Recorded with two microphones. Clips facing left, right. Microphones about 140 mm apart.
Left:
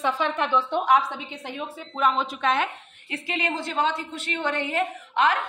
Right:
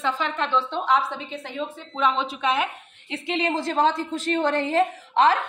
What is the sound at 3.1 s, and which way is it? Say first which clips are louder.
Speech: right 4 dB; 25° right (ahead or behind).